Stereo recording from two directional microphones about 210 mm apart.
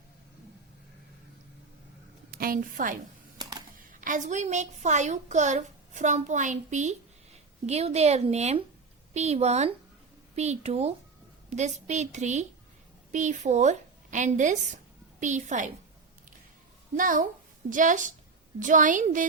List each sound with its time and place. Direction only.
2.3 s a woman's voice: 45° right (ahead or behind)
3.4 s a sound: 20° right (ahead or behind)
3.8 s a woman's voice: 40° right (ahead or behind)
16.9 s a woman's voice: 40° right (ahead or behind)